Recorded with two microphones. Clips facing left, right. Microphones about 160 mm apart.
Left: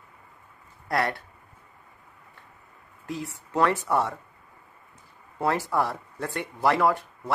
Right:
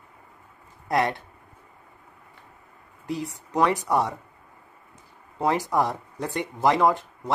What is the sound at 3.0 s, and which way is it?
Speech, 15° right (ahead or behind).